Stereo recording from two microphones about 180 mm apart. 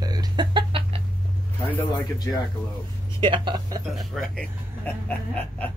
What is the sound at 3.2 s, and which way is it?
Speech, 25° right (ahead or behind).